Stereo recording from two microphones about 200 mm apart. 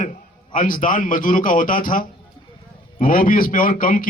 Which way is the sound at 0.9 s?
45° left (ahead or behind).